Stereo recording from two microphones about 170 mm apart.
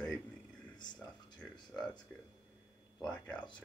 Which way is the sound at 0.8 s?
25° left (ahead or behind).